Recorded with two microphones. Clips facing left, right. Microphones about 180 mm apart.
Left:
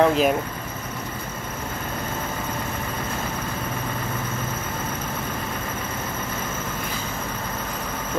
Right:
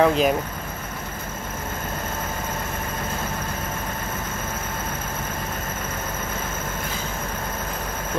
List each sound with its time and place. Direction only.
0.0 s speech: centre (ahead or behind)